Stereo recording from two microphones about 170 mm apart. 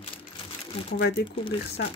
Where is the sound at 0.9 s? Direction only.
70° left (ahead or behind).